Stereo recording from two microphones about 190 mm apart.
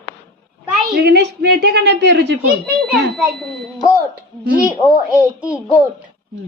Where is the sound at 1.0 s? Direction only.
60° right (ahead or behind).